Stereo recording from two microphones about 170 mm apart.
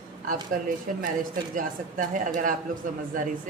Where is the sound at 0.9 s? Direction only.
50° right (ahead or behind).